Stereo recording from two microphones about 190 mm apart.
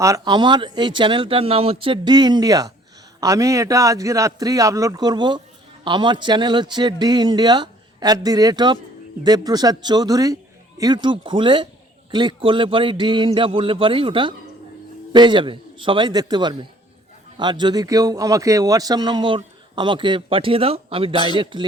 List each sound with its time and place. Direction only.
0.0 s a man's voice: 20° right (ahead or behind)